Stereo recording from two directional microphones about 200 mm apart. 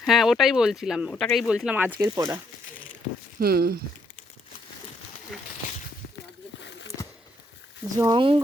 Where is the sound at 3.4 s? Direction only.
50° right (ahead or behind).